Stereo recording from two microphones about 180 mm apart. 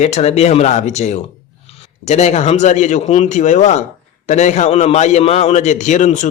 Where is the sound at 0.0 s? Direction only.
40° left (ahead or behind).